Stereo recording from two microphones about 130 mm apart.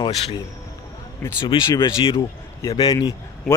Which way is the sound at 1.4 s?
35° left (ahead or behind).